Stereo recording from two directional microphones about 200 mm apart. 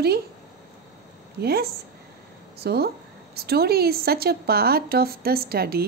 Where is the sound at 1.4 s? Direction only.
50° right (ahead or behind).